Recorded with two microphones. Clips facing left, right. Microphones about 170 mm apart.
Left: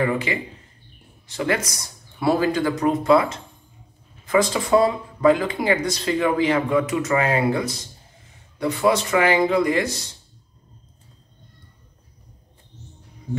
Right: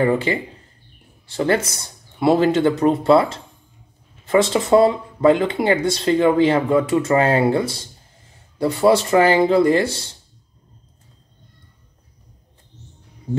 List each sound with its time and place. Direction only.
0.0 s speech: 35° right (ahead or behind)